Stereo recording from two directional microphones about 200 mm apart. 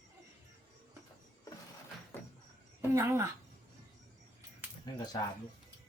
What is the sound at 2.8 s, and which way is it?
Speech, 15° right (ahead or behind).